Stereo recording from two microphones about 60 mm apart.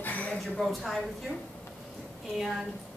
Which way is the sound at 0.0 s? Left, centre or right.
Left.